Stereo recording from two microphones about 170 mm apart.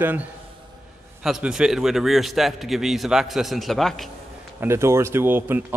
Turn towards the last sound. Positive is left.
turn(degrees=-10)  # may be behind; listen again after turning